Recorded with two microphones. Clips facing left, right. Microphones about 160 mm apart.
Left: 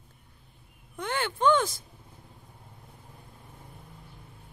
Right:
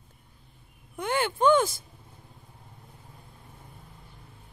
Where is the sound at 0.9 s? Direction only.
10° right (ahead or behind).